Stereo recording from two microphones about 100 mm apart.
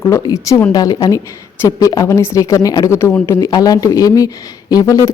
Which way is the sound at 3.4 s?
40° left (ahead or behind).